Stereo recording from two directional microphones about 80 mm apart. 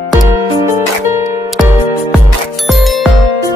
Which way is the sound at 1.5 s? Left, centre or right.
Centre.